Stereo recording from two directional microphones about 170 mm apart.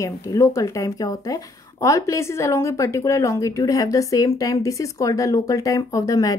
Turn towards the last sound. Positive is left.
turn(degrees=20)  # may be behind; listen again after turning